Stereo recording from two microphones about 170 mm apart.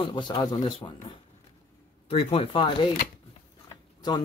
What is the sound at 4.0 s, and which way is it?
Speech, 25° left (ahead or behind).